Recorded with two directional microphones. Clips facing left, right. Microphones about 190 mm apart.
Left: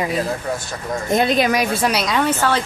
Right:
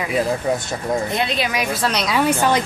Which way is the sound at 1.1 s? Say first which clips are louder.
Left 5 dB; 45° left (ahead or behind).